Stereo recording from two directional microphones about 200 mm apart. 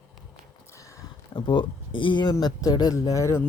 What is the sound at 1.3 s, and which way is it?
Speech, 25° left (ahead or behind).